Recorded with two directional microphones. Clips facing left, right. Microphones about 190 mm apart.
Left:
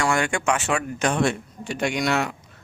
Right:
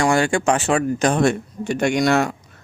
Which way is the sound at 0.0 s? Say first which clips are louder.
Right 5 dB; 30° right (ahead or behind).